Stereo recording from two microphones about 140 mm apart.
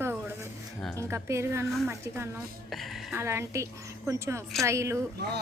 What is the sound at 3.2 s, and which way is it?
A woman's voice, 20° right (ahead or behind).